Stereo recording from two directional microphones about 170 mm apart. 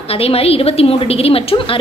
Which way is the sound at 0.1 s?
35° left (ahead or behind).